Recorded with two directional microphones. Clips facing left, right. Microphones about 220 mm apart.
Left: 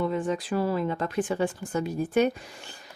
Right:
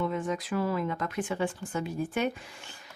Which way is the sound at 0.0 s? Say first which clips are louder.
Left 3 dB; 35° left (ahead or behind).